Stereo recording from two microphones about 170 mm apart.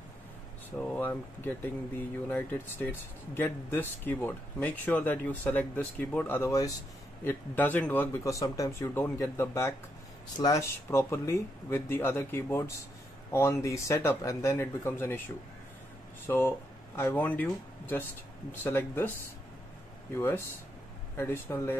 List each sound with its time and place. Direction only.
0.7 s speech: 10° left (ahead or behind)
20.2 s speech: 15° left (ahead or behind)